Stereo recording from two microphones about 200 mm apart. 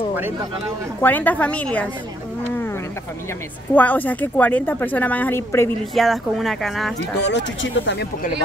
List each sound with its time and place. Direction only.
1.0 s speech: 10° left (ahead or behind)
3.7 s speech: 10° left (ahead or behind)
5.9 s speech: centre (ahead or behind)
7.2 s speech: 60° left (ahead or behind)